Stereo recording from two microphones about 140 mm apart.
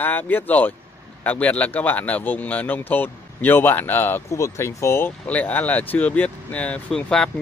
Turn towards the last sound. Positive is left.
turn(degrees=5)  # may be behind; listen again after turning